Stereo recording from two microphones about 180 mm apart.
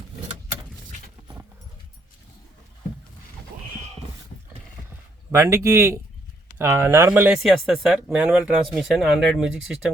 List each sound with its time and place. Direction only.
5.3 s speech: 15° right (ahead or behind)